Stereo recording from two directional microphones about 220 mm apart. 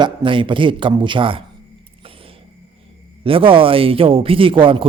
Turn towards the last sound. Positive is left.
turn(degrees=-25)  # may be behind; listen again after turning